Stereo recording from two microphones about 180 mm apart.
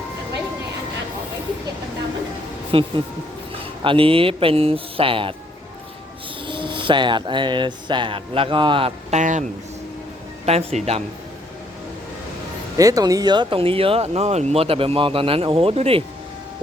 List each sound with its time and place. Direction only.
2.7 s speech: 30° right (ahead or behind)
6.5 s speech: 25° right (ahead or behind)
10.4 s speech: 35° right (ahead or behind)
12.7 s speech: 20° right (ahead or behind)